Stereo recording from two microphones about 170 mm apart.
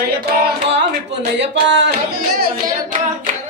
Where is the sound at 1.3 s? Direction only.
90° right.